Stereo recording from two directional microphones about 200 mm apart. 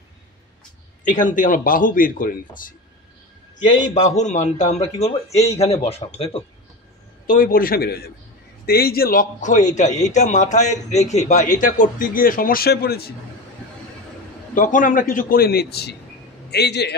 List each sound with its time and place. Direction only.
1.0 s a man's voice: 40° left (ahead or behind)
3.9 s a man's voice: 35° left (ahead or behind)
7.2 s a man's voice: 45° left (ahead or behind)
14.5 s a man's voice: 40° left (ahead or behind)